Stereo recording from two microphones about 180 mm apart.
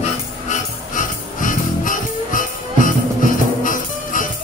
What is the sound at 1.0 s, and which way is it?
Music, 45° left (ahead or behind).